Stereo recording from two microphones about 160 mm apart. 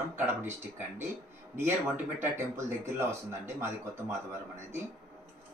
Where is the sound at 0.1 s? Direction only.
15° right (ahead or behind).